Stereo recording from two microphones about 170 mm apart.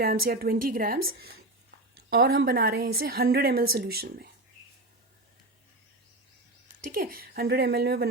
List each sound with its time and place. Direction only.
0.0 s a woman's voice: 60° right (ahead or behind)
6.7 s a woman's voice: 55° right (ahead or behind)